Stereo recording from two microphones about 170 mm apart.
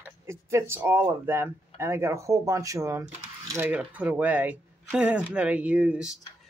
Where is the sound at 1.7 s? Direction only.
15° right (ahead or behind).